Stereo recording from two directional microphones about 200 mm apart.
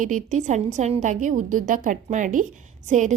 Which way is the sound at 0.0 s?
40° right (ahead or behind).